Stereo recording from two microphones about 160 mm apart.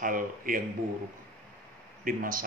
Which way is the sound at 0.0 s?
60° right (ahead or behind).